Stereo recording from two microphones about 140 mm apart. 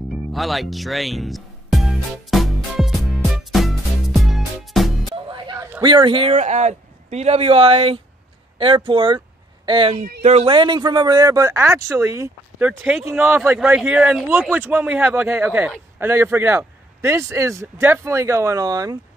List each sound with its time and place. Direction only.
0.3 s music: centre (ahead or behind)
5.1 s music: 35° right (ahead or behind)
5.8 s speech: 35° right (ahead or behind)
6.3 s speech: 60° right (ahead or behind); by 9.9 s 40° right (ahead or behind)
10.2 s speech: 50° right (ahead or behind)
10.5 s speech: 35° right (ahead or behind)